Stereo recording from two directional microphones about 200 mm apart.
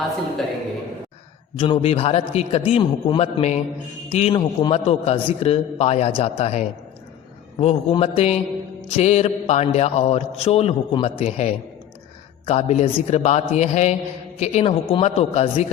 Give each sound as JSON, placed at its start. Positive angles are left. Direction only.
{"t": 1.5, "sound": "a man's voice", "side_deg": 25}